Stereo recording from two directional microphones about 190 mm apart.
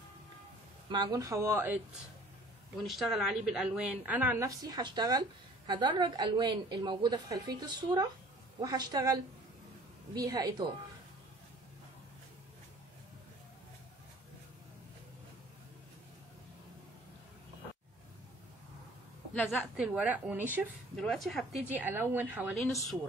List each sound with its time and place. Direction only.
0.8 s a woman's voice: 25° right (ahead or behind)
2.9 s a woman's voice: centre (ahead or behind); by 10.7 s 20° right (ahead or behind)
19.3 s a woman's voice: 10° left (ahead or behind)
19.8 s a woman's voice: 5° right (ahead or behind)
20.9 s a woman's voice: centre (ahead or behind)